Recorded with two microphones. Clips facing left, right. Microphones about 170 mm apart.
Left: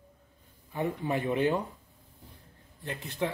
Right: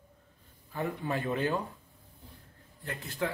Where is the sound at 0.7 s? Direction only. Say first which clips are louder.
Left 3 dB; 20° left (ahead or behind).